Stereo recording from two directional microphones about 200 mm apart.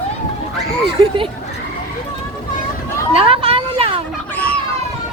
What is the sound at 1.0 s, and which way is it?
Speech, 25° right (ahead or behind).